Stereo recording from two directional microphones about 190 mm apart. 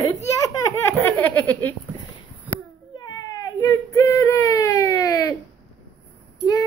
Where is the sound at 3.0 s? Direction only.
20° left (ahead or behind).